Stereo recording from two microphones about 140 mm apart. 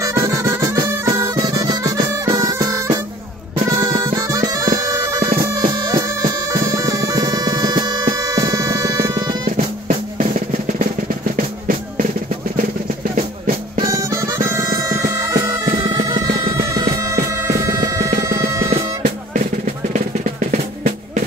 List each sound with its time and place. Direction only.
0.0 s music: 25° right (ahead or behind)
3.6 s bagpipes: 25° right (ahead or behind)
5.7 s music: 25° right (ahead or behind)
9.6 s music: 55° right (ahead or behind)
11.3 s music: 75° right (ahead or behind)
13.8 s music: 20° right (ahead or behind)
18.7 s drum: 65° right (ahead or behind)